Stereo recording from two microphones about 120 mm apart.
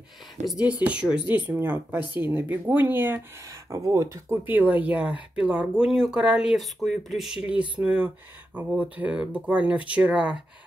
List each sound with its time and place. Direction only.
0.5 s speech: 10° right (ahead or behind)
3.7 s speech: 30° right (ahead or behind)
4.5 s speech: 15° right (ahead or behind)